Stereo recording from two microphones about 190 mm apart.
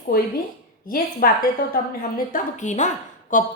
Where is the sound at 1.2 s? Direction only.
50° left (ahead or behind).